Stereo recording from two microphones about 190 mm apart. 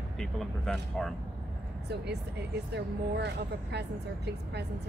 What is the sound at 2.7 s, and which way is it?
Speech, 65° right (ahead or behind).